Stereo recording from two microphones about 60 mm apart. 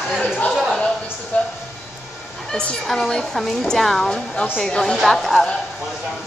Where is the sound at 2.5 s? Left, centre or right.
Centre.